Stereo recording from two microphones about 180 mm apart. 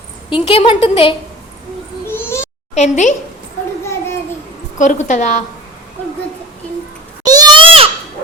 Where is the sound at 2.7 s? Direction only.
40° left (ahead or behind).